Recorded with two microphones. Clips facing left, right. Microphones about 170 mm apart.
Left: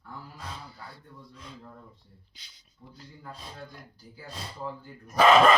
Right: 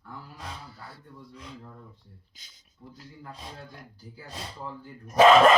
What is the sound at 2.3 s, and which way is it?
Speech, 45° right (ahead or behind).